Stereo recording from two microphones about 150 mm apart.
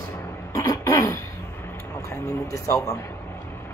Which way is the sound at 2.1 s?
20° left (ahead or behind).